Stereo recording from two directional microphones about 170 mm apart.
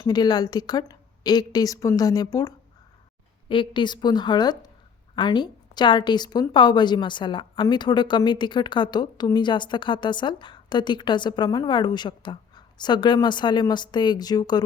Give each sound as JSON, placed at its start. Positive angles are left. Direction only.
{"t": 0.0, "sound": "a woman's voice", "side_deg": 25}
{"t": 3.5, "sound": "a woman's voice", "side_deg": 30}